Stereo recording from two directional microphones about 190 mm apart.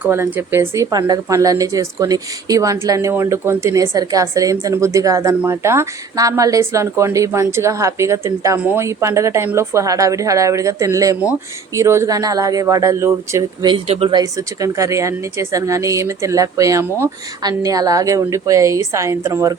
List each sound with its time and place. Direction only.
0.0 s a woman's voice: 10° right (ahead or behind)
13.8 s a woman's voice: 30° right (ahead or behind); by 19.5 s 15° right (ahead or behind)